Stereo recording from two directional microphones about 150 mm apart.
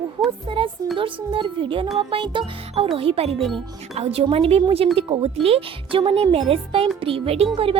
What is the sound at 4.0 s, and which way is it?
Speech, 40° right (ahead or behind).